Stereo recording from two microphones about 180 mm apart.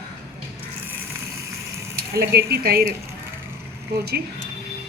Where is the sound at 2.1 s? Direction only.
60° right (ahead or behind).